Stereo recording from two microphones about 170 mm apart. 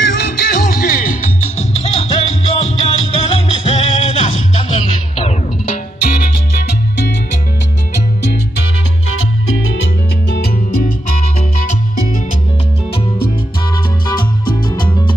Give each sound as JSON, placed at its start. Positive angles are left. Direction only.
{"t": 0.0, "sound": "music", "side_deg": 75}
{"t": 6.0, "sound": "music", "side_deg": 70}
{"t": 10.3, "sound": "music", "side_deg": 75}
{"t": 14.0, "sound": "music", "side_deg": 25}